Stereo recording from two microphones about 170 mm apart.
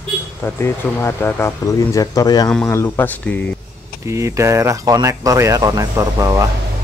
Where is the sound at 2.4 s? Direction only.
5° left (ahead or behind).